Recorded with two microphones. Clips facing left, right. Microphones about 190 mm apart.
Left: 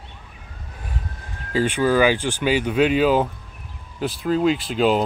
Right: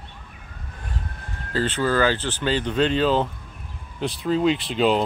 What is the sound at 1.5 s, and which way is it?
Speech, 10° left (ahead or behind).